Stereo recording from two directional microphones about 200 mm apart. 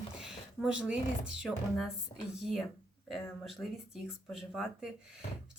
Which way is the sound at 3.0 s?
Centre (ahead or behind).